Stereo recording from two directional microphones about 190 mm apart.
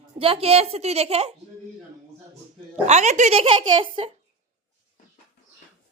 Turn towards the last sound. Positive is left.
turn(degrees=-30)  # may be behind; listen again after turning